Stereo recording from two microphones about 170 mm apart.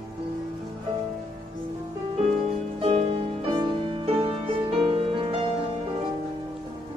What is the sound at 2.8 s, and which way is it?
Music, 35° right (ahead or behind).